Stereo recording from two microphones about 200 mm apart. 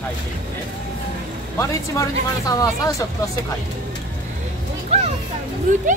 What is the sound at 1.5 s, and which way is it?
Speech, 15° left (ahead or behind).